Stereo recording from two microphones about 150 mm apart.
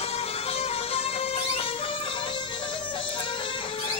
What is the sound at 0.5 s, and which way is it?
Music, 40° left (ahead or behind).